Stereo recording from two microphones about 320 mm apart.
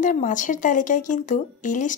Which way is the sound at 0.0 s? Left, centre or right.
Left.